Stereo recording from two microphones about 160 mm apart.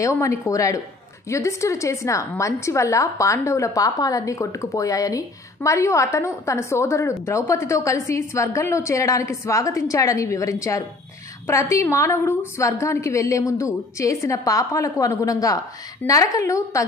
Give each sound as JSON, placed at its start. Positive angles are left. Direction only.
{"t": 0.0, "sound": "a woman's voice", "side_deg": 20}